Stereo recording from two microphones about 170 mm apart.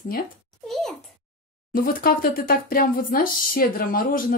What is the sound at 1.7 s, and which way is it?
Speech, 60° left (ahead or behind).